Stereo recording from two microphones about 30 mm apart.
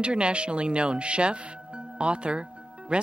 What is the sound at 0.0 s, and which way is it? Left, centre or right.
Speech, right.